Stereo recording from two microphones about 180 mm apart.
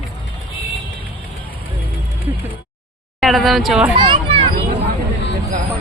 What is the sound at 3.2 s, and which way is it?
Speech, centre (ahead or behind).